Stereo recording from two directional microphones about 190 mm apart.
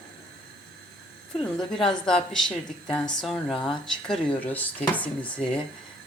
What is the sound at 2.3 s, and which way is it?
Speech, 5° left (ahead or behind).